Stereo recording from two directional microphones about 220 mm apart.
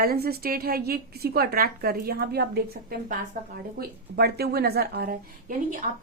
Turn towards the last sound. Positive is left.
turn(degrees=-35)  # may be behind; listen again after turning